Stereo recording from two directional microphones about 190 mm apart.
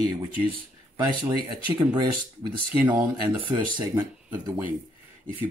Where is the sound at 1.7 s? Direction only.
25° right (ahead or behind).